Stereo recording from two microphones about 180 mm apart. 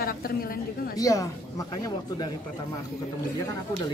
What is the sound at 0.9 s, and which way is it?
Speech, 20° left (ahead or behind).